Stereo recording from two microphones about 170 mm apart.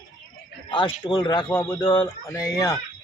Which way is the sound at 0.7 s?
30° left (ahead or behind).